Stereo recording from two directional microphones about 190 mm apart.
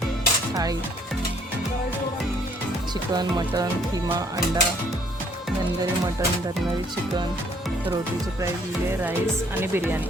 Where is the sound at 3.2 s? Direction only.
20° right (ahead or behind).